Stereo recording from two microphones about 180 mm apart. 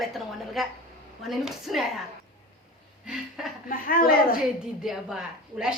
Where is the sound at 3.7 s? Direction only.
50° left (ahead or behind).